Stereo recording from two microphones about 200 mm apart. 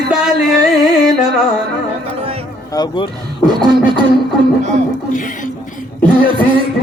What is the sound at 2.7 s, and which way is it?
Speech, 25° left (ahead or behind).